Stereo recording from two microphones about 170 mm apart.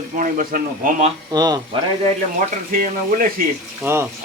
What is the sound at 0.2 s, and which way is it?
Speech, 50° right (ahead or behind).